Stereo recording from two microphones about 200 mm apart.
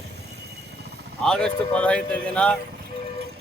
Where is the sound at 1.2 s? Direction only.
5° left (ahead or behind).